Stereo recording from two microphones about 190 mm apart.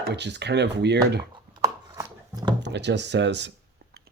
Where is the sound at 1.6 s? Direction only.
20° right (ahead or behind).